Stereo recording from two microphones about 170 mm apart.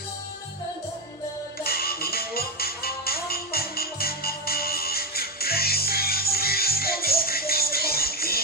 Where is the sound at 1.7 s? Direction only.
65° left (ahead or behind).